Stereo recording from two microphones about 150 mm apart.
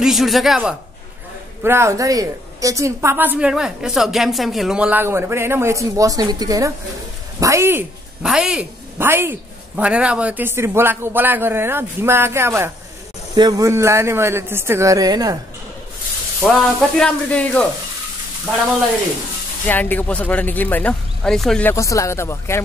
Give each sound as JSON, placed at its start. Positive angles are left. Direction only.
{"t": 0.0, "sound": "a man's voice", "side_deg": 0}
{"t": 1.6, "sound": "a woman's voice", "side_deg": -15}
{"t": 8.2, "sound": "a woman's voice", "side_deg": -5}
{"t": 16.4, "sound": "speech", "side_deg": 5}
{"t": 19.6, "sound": "speech", "side_deg": 10}
{"t": 21.7, "sound": "speech", "side_deg": 20}